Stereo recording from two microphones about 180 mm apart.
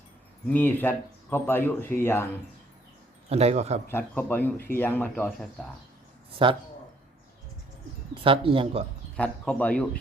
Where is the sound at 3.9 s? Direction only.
10° left (ahead or behind).